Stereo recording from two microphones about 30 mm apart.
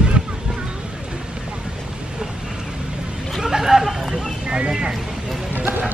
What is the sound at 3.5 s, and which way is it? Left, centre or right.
Chatter, centre.